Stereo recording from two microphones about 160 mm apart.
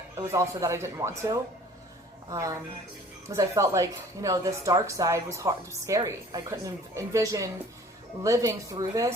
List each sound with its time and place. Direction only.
0.3 s a woman's voice: 20° right (ahead or behind)